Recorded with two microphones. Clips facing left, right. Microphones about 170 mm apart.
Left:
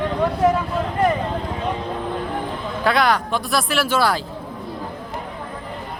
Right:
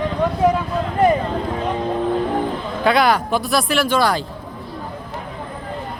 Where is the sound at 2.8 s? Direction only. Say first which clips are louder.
Right 3 dB; centre (ahead or behind).